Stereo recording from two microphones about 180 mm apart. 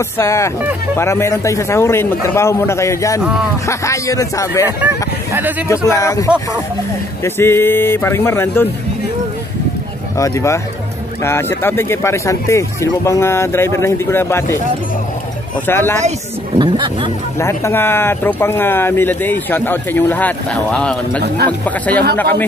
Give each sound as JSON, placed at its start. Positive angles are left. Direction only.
{"t": 0.2, "sound": "speech", "side_deg": 15}
{"t": 4.6, "sound": "speech", "side_deg": -10}
{"t": 5.9, "sound": "speech", "side_deg": 15}
{"t": 10.1, "sound": "speech", "side_deg": 15}
{"t": 15.6, "sound": "speech", "side_deg": 10}
{"t": 16.5, "sound": "speech", "side_deg": -25}
{"t": 17.4, "sound": "speech", "side_deg": 15}